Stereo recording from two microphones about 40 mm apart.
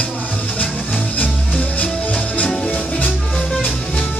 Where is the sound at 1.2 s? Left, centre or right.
Left.